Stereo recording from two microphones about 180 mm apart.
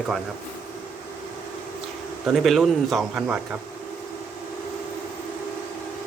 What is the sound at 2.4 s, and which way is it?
Speech, centre (ahead or behind).